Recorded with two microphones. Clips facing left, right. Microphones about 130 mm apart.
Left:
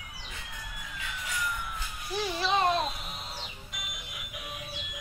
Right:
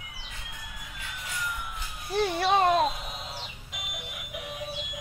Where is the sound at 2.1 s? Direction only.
60° right (ahead or behind).